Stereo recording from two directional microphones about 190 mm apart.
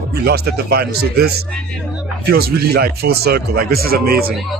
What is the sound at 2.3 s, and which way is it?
A man's voice, 55° right (ahead or behind).